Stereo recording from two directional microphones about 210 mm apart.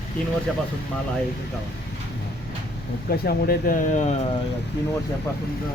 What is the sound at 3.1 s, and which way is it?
Speech, 45° left (ahead or behind).